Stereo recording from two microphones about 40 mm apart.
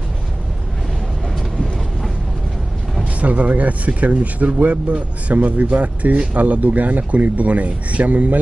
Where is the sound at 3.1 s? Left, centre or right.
Right.